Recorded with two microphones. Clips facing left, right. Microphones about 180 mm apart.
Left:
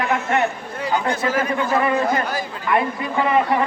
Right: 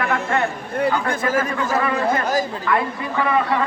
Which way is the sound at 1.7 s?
20° left (ahead or behind).